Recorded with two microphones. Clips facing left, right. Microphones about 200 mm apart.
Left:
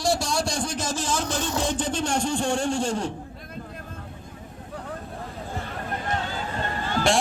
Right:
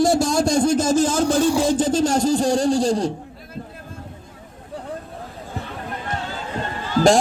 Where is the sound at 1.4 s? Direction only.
10° right (ahead or behind).